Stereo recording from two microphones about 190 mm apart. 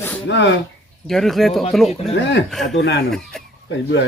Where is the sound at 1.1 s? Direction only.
Centre (ahead or behind).